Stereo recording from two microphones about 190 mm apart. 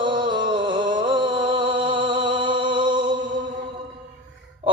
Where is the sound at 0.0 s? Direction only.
25° right (ahead or behind).